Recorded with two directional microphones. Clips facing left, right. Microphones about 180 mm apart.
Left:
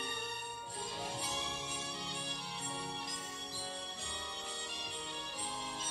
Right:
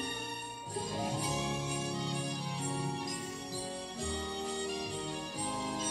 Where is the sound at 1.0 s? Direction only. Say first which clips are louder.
Right 7 dB; 45° right (ahead or behind).